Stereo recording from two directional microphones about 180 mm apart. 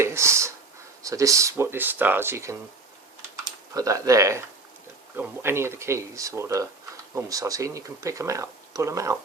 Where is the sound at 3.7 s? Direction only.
20° right (ahead or behind).